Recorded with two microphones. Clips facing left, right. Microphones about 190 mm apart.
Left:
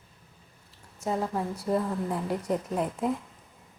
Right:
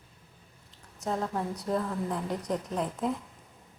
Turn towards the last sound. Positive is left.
turn(degrees=5)  # may be behind; listen again after turning